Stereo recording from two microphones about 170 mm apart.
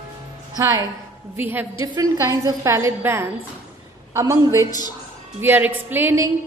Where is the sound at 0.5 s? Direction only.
20° right (ahead or behind).